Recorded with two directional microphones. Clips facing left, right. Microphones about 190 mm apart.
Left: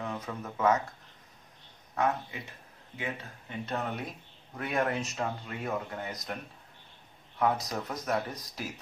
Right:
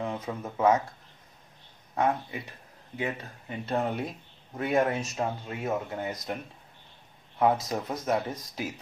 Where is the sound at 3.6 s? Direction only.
30° right (ahead or behind).